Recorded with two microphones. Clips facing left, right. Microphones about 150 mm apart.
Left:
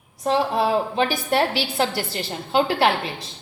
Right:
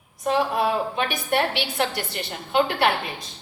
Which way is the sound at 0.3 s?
30° left (ahead or behind).